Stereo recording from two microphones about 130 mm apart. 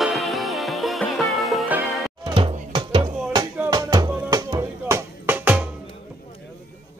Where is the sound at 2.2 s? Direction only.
40° right (ahead or behind).